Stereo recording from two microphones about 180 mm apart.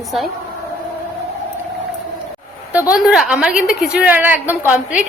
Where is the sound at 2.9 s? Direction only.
5° right (ahead or behind).